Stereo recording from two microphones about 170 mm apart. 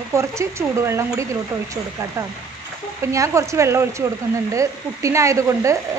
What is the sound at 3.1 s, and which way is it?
A woman's voice, 20° right (ahead or behind).